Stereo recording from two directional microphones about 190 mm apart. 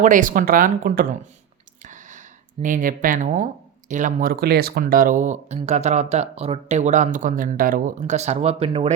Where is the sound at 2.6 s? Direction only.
45° right (ahead or behind).